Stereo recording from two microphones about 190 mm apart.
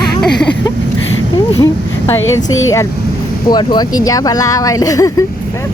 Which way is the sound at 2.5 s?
90° left.